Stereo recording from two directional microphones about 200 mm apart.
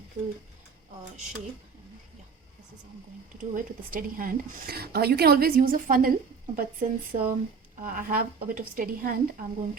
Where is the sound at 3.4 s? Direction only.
40° right (ahead or behind).